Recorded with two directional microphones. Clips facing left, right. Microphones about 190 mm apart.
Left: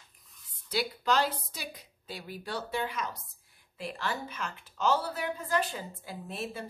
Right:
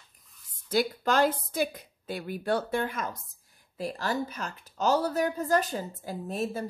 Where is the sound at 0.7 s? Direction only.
50° right (ahead or behind).